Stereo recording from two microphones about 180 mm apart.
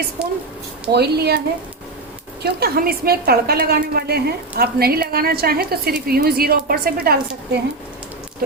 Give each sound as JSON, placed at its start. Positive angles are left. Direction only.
{"t": 0.9, "sound": "a woman's voice", "side_deg": -65}
{"t": 2.4, "sound": "a woman's voice", "side_deg": -60}